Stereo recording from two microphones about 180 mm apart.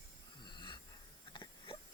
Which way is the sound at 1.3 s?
25° left (ahead or behind).